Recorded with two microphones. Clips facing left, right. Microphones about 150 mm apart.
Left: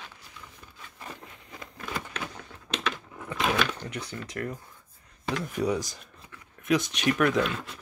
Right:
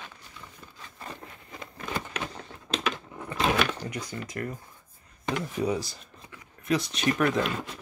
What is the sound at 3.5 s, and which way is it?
Speech, 5° right (ahead or behind).